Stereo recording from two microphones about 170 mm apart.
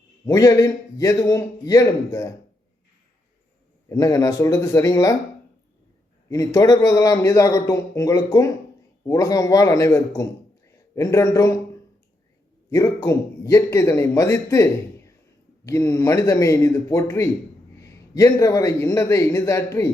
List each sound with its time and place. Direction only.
0.3 s a man's voice: 20° left (ahead or behind)
3.8 s a man's voice: 20° left (ahead or behind)
6.2 s a man's voice: 20° left (ahead or behind)
12.7 s a man's voice: 20° left (ahead or behind)